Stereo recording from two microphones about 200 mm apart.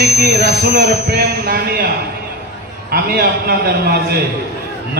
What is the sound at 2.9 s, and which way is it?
A man's voice, 50° right (ahead or behind).